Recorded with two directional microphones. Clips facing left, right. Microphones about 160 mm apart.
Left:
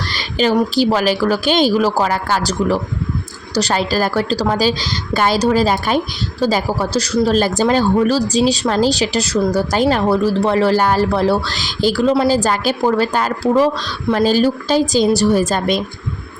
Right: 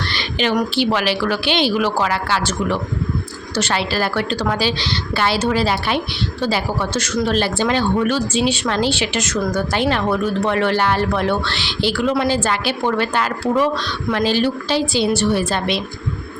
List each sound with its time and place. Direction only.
0.3 s a woman's voice: 40° left (ahead or behind)